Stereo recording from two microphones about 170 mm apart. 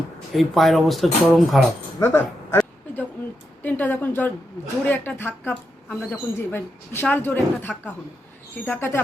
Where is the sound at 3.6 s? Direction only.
10° left (ahead or behind).